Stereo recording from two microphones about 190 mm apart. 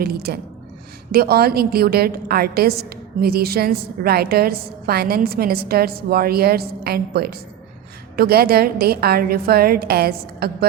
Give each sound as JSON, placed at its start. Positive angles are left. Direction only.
{"t": 0.0, "sound": "a woman's voice", "side_deg": -55}